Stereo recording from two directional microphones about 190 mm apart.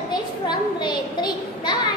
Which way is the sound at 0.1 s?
20° left (ahead or behind).